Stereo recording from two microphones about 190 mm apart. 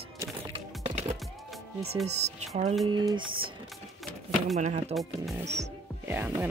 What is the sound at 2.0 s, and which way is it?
Speech, 35° right (ahead or behind).